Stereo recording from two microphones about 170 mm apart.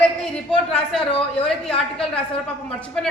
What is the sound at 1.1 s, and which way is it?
Speech, 30° left (ahead or behind).